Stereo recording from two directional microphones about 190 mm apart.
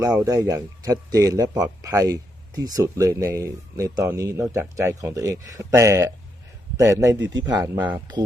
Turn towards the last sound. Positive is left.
turn(degrees=-10)  # may be behind; listen again after turning